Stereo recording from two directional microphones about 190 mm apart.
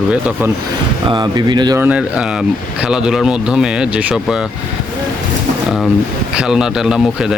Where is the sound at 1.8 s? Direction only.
5° right (ahead or behind).